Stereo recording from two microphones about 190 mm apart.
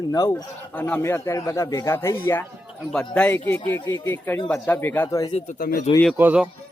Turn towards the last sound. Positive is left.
turn(degrees=-5)  # may be behind; listen again after turning